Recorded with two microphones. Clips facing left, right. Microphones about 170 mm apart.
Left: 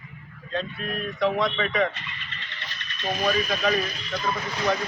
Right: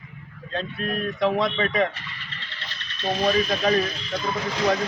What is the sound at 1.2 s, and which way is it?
Speech, 30° right (ahead or behind).